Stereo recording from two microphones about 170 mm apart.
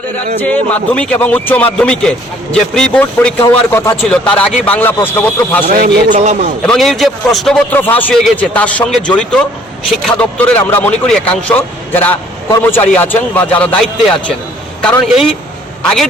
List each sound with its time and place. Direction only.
0.4 s a man's voice: 10° left (ahead or behind)
5.6 s a man's voice: 55° right (ahead or behind)
6.7 s a man's voice: centre (ahead or behind)